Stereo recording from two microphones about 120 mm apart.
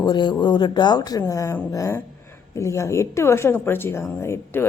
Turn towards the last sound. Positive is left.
turn(degrees=20)  # may be behind; listen again after turning